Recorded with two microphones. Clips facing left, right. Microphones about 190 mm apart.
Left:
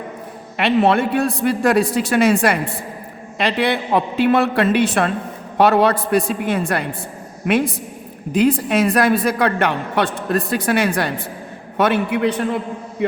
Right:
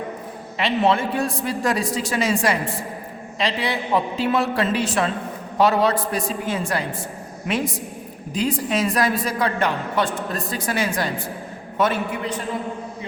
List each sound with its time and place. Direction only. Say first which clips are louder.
0.5 s a man's voice: left 4 dB; 60° left (ahead or behind)